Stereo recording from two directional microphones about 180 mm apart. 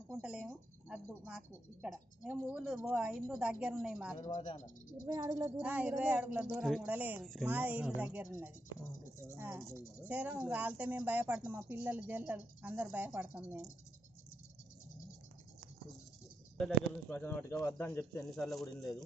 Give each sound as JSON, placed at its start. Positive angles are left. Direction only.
{"t": 0.1, "sound": "speech", "side_deg": -5}
{"t": 4.2, "sound": "speech", "side_deg": 40}
{"t": 5.0, "sound": "speech", "side_deg": -20}
{"t": 5.5, "sound": "speech", "side_deg": -5}
{"t": 16.6, "sound": "speech", "side_deg": 5}
{"t": 18.3, "sound": "speech", "side_deg": 0}